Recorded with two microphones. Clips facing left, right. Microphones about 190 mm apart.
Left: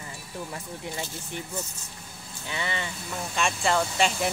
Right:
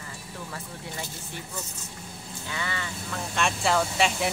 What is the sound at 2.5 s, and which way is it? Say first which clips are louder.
Speech: left 2 dB; 20° left (ahead or behind).